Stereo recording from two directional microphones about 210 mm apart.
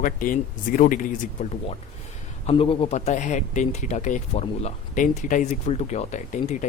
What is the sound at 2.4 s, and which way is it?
Speech, 25° left (ahead or behind).